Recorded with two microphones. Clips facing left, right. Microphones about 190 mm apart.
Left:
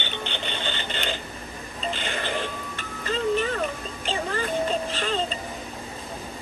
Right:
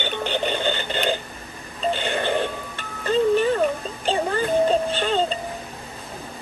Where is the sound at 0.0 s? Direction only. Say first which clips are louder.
Right 8 dB; 45° right (ahead or behind).